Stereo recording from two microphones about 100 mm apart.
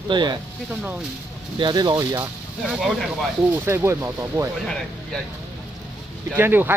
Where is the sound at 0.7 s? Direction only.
10° right (ahead or behind).